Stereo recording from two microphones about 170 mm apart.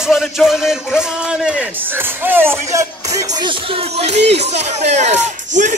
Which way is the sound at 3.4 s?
35° right (ahead or behind).